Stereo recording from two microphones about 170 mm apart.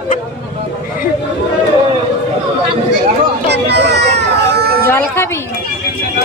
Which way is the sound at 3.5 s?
90° right.